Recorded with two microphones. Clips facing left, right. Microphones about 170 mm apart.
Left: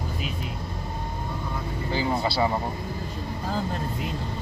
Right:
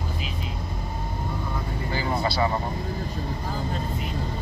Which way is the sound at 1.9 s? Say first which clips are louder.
Left 1 dB; 25° left (ahead or behind).